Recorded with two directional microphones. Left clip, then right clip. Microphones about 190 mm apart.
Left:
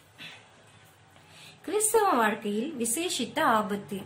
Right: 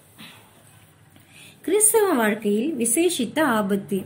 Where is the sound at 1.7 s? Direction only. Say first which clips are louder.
Right 5 dB; 20° right (ahead or behind).